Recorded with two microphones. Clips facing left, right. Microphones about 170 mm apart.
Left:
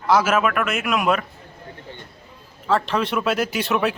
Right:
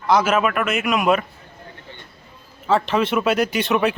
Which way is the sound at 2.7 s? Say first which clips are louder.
Right 2 dB; centre (ahead or behind).